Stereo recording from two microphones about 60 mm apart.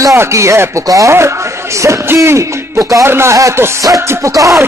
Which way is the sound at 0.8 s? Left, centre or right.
Right.